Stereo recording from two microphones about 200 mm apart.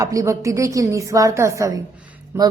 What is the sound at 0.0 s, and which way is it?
A woman's voice, 15° right (ahead or behind).